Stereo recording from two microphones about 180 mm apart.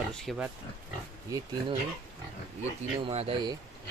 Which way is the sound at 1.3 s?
15° right (ahead or behind).